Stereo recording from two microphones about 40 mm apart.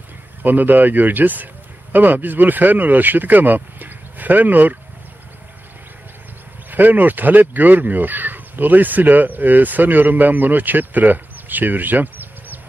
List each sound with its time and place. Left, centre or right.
0.4 s speech: right
6.7 s speech: right